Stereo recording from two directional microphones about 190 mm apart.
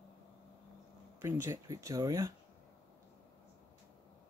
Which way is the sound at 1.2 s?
15° right (ahead or behind).